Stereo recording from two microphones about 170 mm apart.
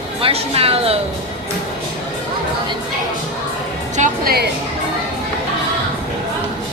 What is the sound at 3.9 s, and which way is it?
Speech, 55° right (ahead or behind).